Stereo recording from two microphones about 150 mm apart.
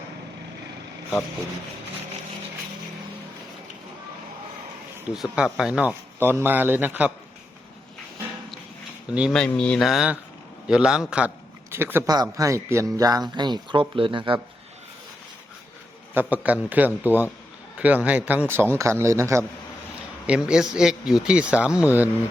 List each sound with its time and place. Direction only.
5.1 s speech: centre (ahead or behind)
9.3 s speech: 5° left (ahead or behind); by 12.0 s 15° right (ahead or behind)
12.0 s a man's voice: 25° right (ahead or behind)
16.1 s a man's voice: 10° right (ahead or behind)
20.2 s speech: 5° right (ahead or behind)